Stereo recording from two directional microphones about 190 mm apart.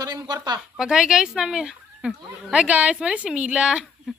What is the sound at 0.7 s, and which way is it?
Speech, 5° right (ahead or behind).